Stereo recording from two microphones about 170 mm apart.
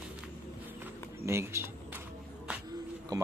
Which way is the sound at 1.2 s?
15° right (ahead or behind).